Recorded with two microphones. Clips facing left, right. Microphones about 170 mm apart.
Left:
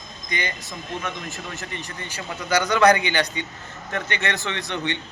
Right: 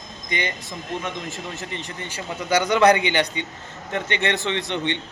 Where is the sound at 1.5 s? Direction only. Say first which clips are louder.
Right 2 dB; 25° right (ahead or behind).